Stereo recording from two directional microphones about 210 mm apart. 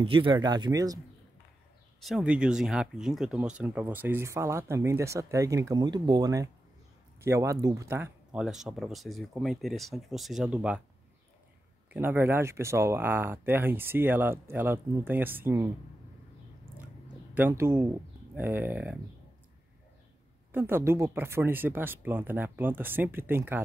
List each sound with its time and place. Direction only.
0.0 s speech: 25° right (ahead or behind)
2.0 s speech: centre (ahead or behind)
11.9 s speech: 10° right (ahead or behind)
17.3 s speech: 10° right (ahead or behind)
20.5 s speech: 10° right (ahead or behind)